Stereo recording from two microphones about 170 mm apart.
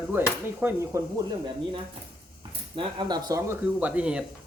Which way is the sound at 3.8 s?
5° right (ahead or behind).